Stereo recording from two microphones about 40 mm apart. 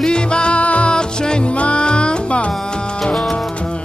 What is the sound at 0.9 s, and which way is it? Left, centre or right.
Music, left.